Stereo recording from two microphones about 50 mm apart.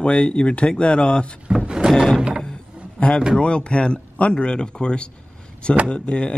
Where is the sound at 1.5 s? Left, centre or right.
Centre.